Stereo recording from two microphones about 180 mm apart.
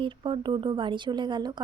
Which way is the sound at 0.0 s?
25° right (ahead or behind).